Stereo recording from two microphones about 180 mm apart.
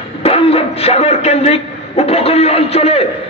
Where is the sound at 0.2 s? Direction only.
30° left (ahead or behind).